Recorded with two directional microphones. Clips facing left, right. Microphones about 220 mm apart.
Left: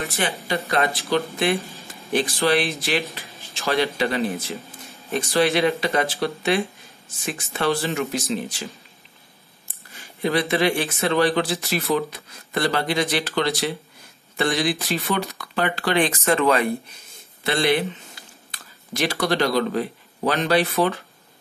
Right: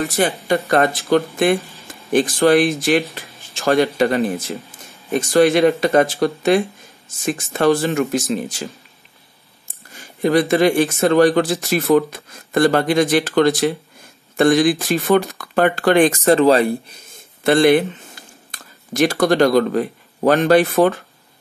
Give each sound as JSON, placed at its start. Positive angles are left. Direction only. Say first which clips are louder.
{"t": 0.0, "sound": "speech", "louder": "right 7 dB", "side_deg": -45}
{"t": 9.7, "sound": "speech", "louder": "right 4 dB", "side_deg": -45}
{"t": 16.3, "sound": "speech", "louder": "right 5 dB", "side_deg": -35}
{"t": 17.4, "sound": "speech", "louder": "right 8 dB", "side_deg": -50}